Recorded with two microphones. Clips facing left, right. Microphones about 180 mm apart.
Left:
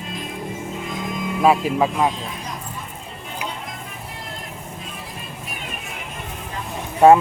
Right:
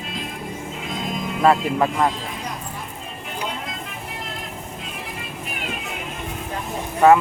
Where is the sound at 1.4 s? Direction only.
10° left (ahead or behind).